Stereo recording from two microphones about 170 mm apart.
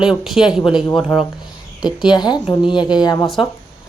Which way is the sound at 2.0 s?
25° left (ahead or behind).